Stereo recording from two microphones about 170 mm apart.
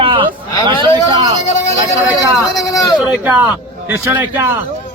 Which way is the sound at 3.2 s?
15° right (ahead or behind).